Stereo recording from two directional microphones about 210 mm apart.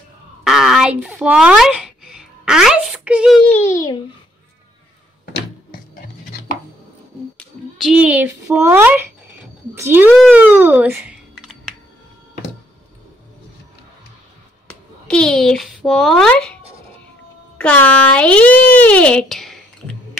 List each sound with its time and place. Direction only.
0.4 s a sound: centre (ahead or behind)
3.6 s babbling: 15° left (ahead or behind)
5.2 s a sound: 45° left (ahead or behind)
7.7 s a child's voice: centre (ahead or behind)
14.7 s speech: 5° left (ahead or behind)
17.6 s speech: 5° left (ahead or behind)